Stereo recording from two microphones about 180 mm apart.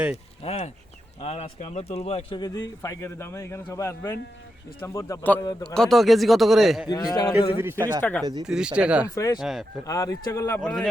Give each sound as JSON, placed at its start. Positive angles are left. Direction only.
{"t": 0.4, "sound": "speech", "side_deg": 35}
{"t": 2.4, "sound": "a man's voice", "side_deg": 20}
{"t": 5.6, "sound": "speech", "side_deg": 5}
{"t": 6.8, "sound": "speech", "side_deg": 20}
{"t": 7.6, "sound": "speech", "side_deg": -15}
{"t": 8.0, "sound": "a man's voice", "side_deg": 10}
{"t": 8.4, "sound": "speech", "side_deg": -5}
{"t": 9.1, "sound": "a man's voice", "side_deg": 20}
{"t": 9.4, "sound": "speech", "side_deg": 0}
{"t": 9.8, "sound": "a man's voice", "side_deg": 20}
{"t": 10.6, "sound": "speech", "side_deg": 5}